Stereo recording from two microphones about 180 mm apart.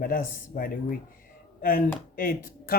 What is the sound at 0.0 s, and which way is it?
Speech, 50° left (ahead or behind).